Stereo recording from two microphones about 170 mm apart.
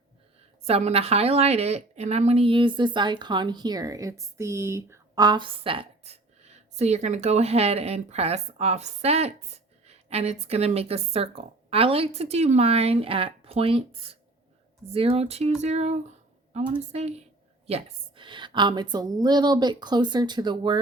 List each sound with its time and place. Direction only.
0.6 s a woman's voice: 40° right (ahead or behind)